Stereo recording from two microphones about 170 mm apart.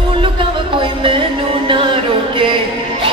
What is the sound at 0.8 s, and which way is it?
Music, 30° right (ahead or behind).